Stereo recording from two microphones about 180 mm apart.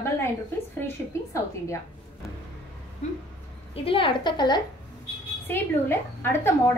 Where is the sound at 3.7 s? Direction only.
30° left (ahead or behind).